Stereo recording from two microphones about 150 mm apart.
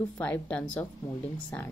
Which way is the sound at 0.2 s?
10° left (ahead or behind).